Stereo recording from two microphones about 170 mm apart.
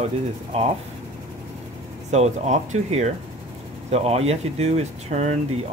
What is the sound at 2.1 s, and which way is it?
Speech, 40° right (ahead or behind).